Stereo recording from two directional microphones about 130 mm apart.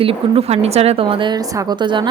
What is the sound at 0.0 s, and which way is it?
A woman's voice, 45° right (ahead or behind).